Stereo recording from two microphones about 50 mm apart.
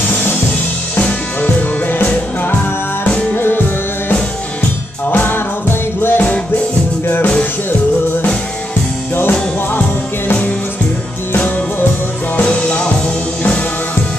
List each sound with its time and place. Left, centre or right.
0.9 s music: left
3.3 s music: left
5.1 s music: left
9.7 s music: left
12.4 s music: centre